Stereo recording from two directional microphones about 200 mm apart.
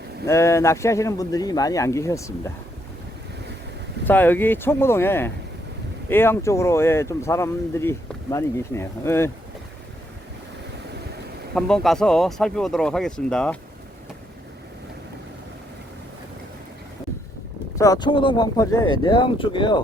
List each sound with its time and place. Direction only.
0.3 s speech: 15° left (ahead or behind)
4.0 s speech: 10° left (ahead or behind)
11.5 s speech: centre (ahead or behind)
17.7 s speech: 15° left (ahead or behind)